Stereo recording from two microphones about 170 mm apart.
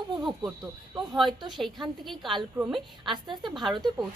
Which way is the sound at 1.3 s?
25° right (ahead or behind).